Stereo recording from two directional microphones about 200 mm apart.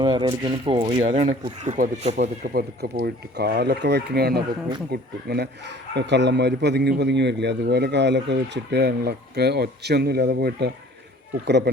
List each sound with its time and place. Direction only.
0.0 s speech: 20° right (ahead or behind)
2.2 s speech: 45° right (ahead or behind)